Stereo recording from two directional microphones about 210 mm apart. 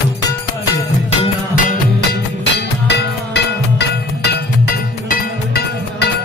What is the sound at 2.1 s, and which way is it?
Music, 50° left (ahead or behind).